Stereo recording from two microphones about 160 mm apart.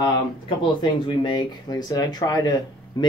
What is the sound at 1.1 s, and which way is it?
Speech, 30° left (ahead or behind).